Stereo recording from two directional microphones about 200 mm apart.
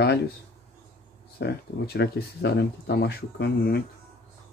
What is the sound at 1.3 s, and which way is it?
Speech, 55° left (ahead or behind).